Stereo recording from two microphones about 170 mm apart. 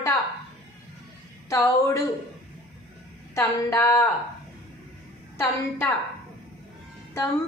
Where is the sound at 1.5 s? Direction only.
15° left (ahead or behind).